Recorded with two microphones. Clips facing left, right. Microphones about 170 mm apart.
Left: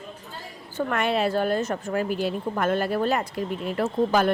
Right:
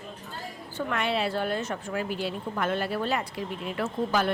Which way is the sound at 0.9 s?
50° left (ahead or behind).